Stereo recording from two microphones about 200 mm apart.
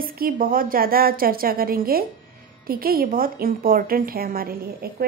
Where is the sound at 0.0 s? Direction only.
45° right (ahead or behind).